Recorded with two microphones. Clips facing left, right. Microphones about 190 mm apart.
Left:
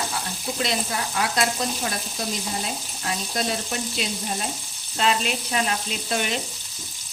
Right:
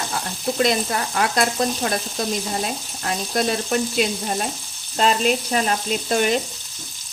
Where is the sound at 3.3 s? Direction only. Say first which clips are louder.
Right 8 dB; 55° right (ahead or behind).